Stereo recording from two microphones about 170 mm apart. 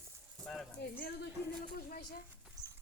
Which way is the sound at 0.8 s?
70° left (ahead or behind).